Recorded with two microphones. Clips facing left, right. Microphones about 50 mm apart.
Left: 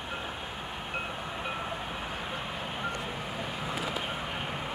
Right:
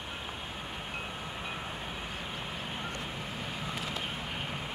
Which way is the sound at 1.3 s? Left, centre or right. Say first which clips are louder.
Left 4 dB; centre.